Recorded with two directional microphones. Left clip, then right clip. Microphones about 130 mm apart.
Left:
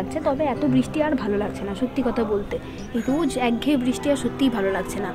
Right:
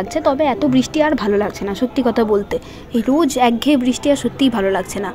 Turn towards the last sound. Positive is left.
turn(degrees=-35)  # may be behind; listen again after turning